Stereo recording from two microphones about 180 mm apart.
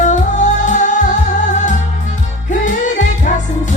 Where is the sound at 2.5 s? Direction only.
45° left (ahead or behind).